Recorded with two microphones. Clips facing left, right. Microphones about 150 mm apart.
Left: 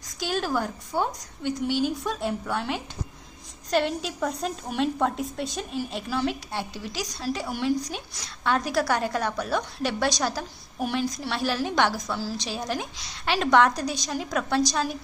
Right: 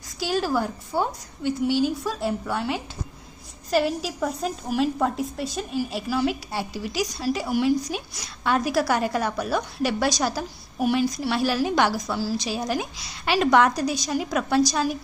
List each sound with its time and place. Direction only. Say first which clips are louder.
0.2 s a woman's voice: right 3 dB; 5° right (ahead or behind)